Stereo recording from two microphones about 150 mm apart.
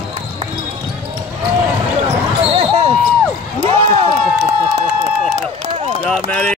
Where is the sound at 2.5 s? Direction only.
45° right (ahead or behind).